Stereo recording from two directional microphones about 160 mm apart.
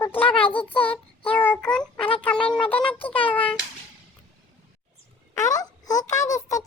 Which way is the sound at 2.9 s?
35° left (ahead or behind).